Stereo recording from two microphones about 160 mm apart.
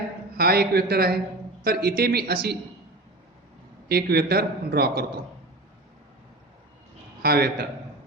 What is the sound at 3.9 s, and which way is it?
A man's voice, 80° right.